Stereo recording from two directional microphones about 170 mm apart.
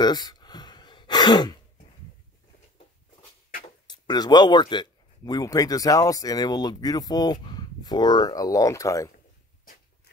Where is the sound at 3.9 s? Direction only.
25° left (ahead or behind).